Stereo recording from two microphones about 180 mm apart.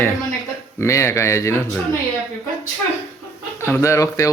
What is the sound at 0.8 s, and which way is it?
Speech, 15° left (ahead or behind).